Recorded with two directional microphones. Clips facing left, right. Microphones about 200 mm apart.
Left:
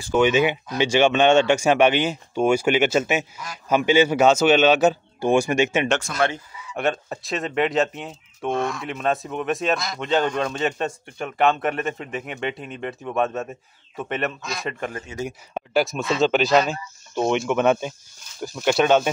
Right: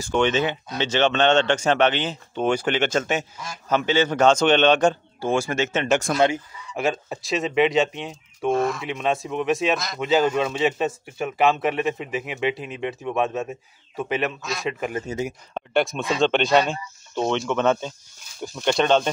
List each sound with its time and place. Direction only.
0.1 s speech: 10° left (ahead or behind)
6.1 s speech: 15° right (ahead or behind)
6.7 s speech: centre (ahead or behind)
15.1 s a man's voice: 40° right (ahead or behind)
15.5 s speech: centre (ahead or behind)